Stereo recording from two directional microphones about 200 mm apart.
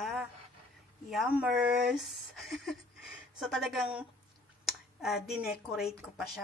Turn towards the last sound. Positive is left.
turn(degrees=0)  # may be behind; listen again after turning